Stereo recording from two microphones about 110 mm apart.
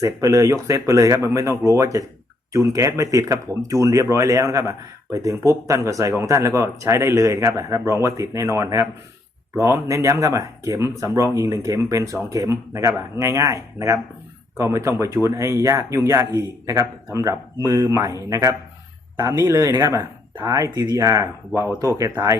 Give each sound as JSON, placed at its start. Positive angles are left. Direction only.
{"t": 0.0, "sound": "speech", "side_deg": -30}
{"t": 20.3, "sound": "speech", "side_deg": -35}